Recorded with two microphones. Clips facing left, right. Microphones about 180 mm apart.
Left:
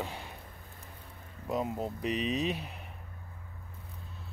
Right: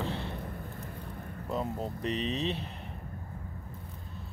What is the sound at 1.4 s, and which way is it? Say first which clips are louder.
Speech: left 1 dB; 10° left (ahead or behind).